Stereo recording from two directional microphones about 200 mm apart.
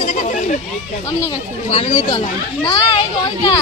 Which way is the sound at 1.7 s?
30° left (ahead or behind).